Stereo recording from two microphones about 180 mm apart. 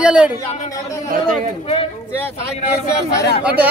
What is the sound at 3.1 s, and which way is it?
Speech, 65° left (ahead or behind).